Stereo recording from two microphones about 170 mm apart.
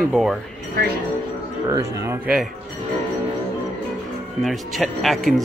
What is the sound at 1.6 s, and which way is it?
Speech, 20° right (ahead or behind).